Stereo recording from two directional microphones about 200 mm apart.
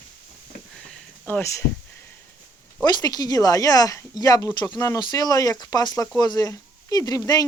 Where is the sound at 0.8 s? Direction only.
10° left (ahead or behind).